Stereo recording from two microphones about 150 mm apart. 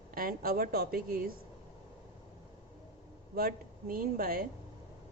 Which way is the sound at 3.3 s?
75° right (ahead or behind).